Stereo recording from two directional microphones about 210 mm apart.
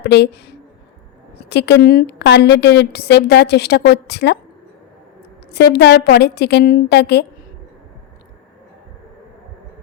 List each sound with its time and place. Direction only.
0.0 s a woman's voice: 50° left (ahead or behind)
5.6 s a woman's voice: 50° left (ahead or behind)